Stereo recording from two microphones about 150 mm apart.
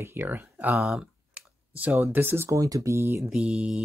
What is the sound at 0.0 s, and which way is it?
Speech, 15° right (ahead or behind).